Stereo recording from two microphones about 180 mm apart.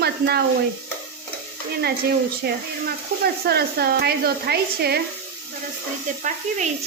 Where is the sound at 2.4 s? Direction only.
65° right (ahead or behind).